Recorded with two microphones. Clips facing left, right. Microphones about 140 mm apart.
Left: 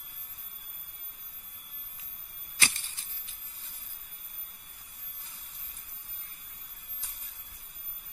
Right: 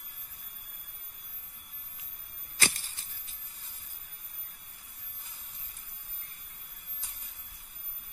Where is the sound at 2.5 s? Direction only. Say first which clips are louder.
Right 2 dB; 40° right (ahead or behind).